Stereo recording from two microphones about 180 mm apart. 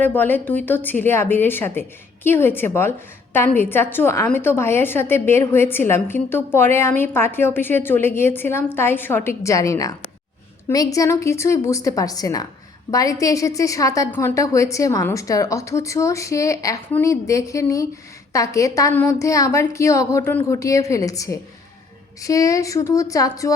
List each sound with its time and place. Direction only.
0.0 s a woman's voice: 10° left (ahead or behind)
10.9 s a woman's voice: 15° left (ahead or behind)